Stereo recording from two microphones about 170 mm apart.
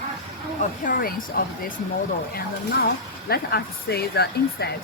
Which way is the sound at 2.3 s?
70° left (ahead or behind).